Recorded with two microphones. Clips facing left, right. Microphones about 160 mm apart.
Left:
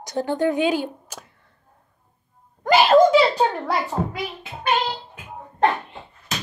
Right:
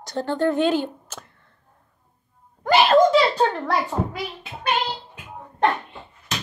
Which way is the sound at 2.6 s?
15° left (ahead or behind).